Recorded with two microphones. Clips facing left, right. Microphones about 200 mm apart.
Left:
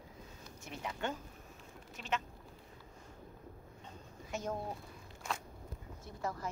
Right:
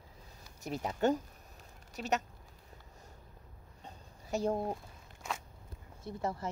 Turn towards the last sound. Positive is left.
turn(degrees=-25)  # may be behind; listen again after turning